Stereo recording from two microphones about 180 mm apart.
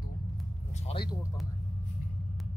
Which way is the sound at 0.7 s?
35° left (ahead or behind).